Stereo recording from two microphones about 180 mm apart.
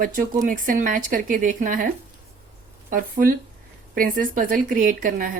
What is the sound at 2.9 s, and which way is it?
Speech, 50° right (ahead or behind).